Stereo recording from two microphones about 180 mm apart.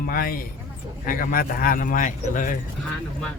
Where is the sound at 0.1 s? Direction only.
55° left (ahead or behind).